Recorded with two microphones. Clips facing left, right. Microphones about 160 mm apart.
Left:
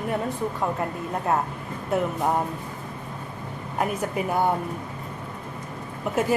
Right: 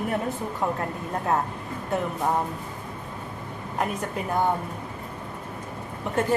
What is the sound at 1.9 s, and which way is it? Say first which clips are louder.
Speech: left 3 dB; centre (ahead or behind).